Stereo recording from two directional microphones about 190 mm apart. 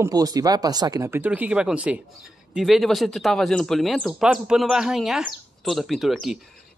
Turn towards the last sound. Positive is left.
turn(degrees=0)  # may be behind; listen again after turning